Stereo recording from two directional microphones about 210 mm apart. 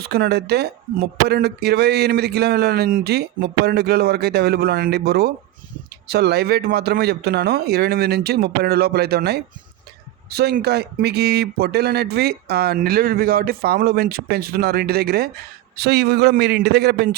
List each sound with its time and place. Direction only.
0.0 s speech: 50° right (ahead or behind)